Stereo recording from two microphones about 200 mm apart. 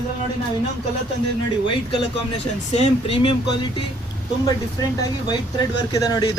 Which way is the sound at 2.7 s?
30° left (ahead or behind).